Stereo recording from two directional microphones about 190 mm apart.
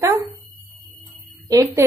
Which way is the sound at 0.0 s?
20° right (ahead or behind).